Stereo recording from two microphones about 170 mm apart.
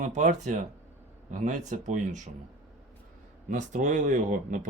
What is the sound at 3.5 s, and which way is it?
Speech, 45° right (ahead or behind).